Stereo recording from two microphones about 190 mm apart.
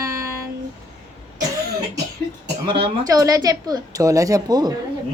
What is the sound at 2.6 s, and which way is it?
Speech, 25° right (ahead or behind).